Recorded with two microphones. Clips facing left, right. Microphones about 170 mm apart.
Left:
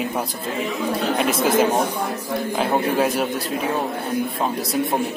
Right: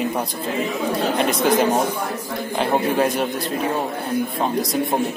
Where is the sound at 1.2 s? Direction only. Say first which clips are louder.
Even; 5° left (ahead or behind).